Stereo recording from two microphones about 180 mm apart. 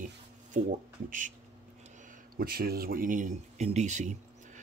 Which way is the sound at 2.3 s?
55° right (ahead or behind).